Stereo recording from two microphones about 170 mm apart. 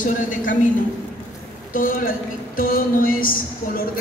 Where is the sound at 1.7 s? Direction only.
55° left (ahead or behind).